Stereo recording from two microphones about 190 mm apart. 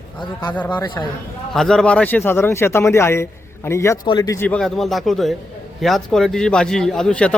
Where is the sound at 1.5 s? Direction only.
5° left (ahead or behind).